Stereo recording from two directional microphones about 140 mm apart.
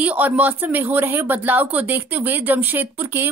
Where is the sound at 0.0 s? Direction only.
10° right (ahead or behind).